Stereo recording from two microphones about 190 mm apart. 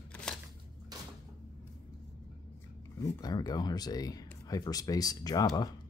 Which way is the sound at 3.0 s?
20° left (ahead or behind).